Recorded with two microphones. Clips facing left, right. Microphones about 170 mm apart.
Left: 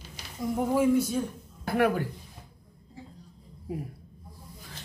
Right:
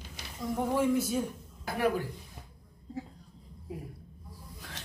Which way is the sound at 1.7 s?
65° left (ahead or behind).